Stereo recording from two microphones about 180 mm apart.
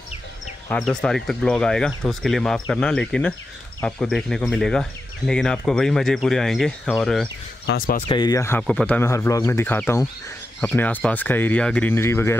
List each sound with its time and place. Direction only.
0.7 s speech: 5° left (ahead or behind)
7.7 s speech: 75° left (ahead or behind)
8.1 s speech: 20° left (ahead or behind)